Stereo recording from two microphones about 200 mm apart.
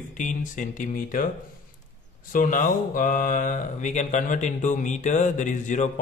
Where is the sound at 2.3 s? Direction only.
40° left (ahead or behind).